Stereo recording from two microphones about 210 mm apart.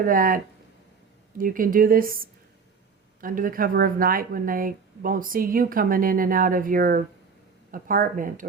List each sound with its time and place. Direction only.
0.0 s speech: 40° right (ahead or behind)